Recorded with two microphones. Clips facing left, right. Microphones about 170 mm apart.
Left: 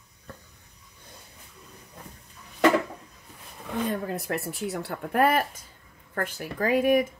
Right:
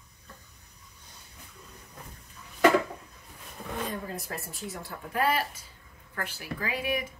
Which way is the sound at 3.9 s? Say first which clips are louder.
Left 7 dB; 65° left (ahead or behind).